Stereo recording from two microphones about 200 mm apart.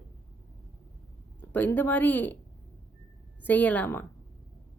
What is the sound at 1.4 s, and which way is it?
Speech, 10° left (ahead or behind).